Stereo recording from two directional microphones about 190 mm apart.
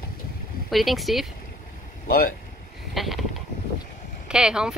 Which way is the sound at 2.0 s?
50° left (ahead or behind).